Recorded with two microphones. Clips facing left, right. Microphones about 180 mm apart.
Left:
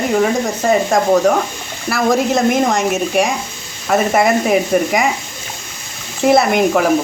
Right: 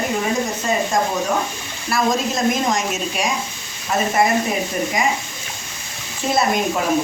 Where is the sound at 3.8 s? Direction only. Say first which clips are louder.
Left 5 dB; 70° left (ahead or behind).